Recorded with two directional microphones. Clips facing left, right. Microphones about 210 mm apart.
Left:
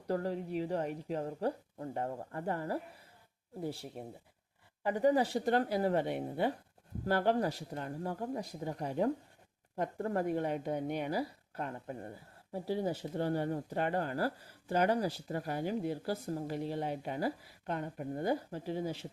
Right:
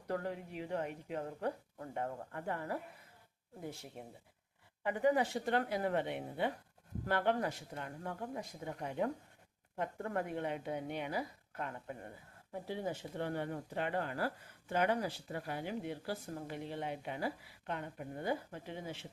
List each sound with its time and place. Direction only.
0.1 s speech: 35° left (ahead or behind)